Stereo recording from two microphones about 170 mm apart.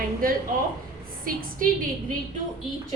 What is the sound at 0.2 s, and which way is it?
A woman's voice, 60° right (ahead or behind).